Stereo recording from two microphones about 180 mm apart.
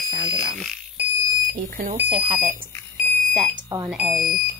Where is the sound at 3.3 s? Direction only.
Centre (ahead or behind).